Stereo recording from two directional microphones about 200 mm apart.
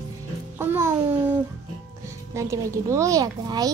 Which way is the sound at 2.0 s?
15° right (ahead or behind).